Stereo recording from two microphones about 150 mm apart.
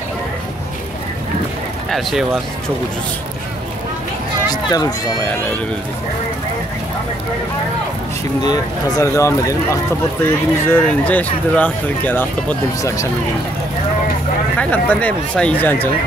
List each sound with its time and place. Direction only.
1.9 s speech: centre (ahead or behind)
4.5 s a sound: 25° left (ahead or behind)
5.2 s speech: 15° left (ahead or behind)
8.4 s speech: 25° left (ahead or behind)
10.7 s speech: 10° left (ahead or behind)
14.6 s speech: 10° left (ahead or behind)